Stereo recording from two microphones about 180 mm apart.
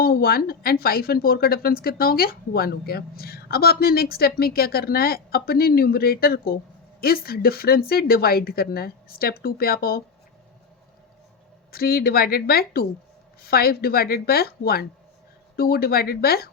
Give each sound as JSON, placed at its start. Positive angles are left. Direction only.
{"t": 0.0, "sound": "speech", "side_deg": 55}
{"t": 11.7, "sound": "speech", "side_deg": 55}